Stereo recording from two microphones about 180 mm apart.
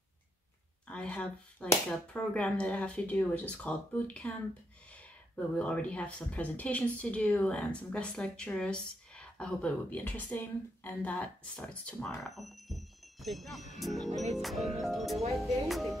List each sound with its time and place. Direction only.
0.8 s speech: 5° left (ahead or behind)